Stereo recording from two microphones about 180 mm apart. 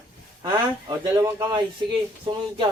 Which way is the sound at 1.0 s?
15° right (ahead or behind).